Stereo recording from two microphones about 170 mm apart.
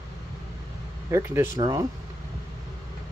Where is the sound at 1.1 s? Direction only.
15° right (ahead or behind).